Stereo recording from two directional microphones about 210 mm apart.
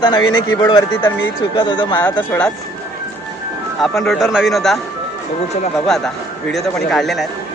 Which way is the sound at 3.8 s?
Centre (ahead or behind).